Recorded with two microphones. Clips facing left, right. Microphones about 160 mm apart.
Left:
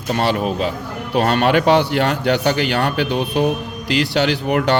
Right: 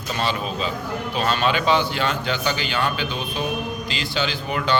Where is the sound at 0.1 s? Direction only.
60° left (ahead or behind).